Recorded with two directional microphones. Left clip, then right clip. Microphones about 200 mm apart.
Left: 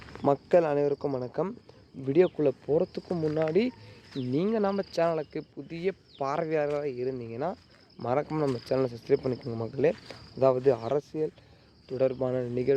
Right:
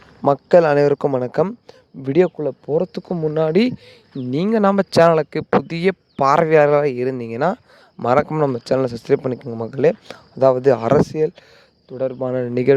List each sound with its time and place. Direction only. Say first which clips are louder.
0.3 s speech: right 10 dB; 40° right (ahead or behind)
2.3 s speech: right 3 dB; 25° right (ahead or behind)
2.6 s speech: right 7 dB; 40° right (ahead or behind)
11.9 s speech: right 5 dB; 30° right (ahead or behind); by 12.7 s 50° right (ahead or behind)